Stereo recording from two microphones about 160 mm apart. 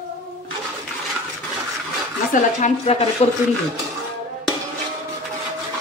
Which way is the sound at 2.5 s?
50° left (ahead or behind).